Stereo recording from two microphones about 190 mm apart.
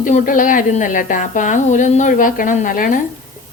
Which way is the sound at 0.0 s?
45° left (ahead or behind).